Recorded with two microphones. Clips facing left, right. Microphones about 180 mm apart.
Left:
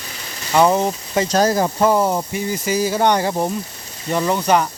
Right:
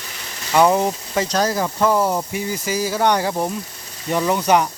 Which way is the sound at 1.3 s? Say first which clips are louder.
Left 5 dB; 45° left (ahead or behind).